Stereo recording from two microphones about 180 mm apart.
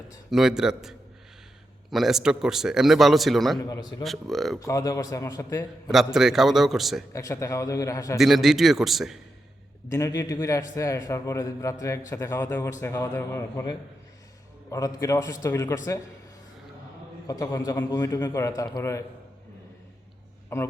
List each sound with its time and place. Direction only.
0.3 s a man's voice: centre (ahead or behind)
3.6 s a man's voice: 20° left (ahead or behind)
4.0 s a man's voice: centre (ahead or behind)
4.6 s a man's voice: 20° left (ahead or behind)
5.9 s a man's voice: centre (ahead or behind)
7.1 s a man's voice: 15° left (ahead or behind)
8.2 s a man's voice: centre (ahead or behind)
9.9 s a man's voice: 20° left (ahead or behind)
17.2 s a man's voice: 15° left (ahead or behind)
20.5 s a man's voice: 15° left (ahead or behind)